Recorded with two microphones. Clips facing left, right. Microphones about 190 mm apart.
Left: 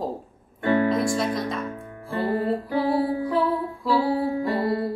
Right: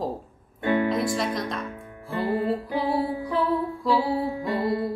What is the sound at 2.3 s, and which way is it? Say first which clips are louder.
Music: left 1 dB; 15° right (ahead or behind).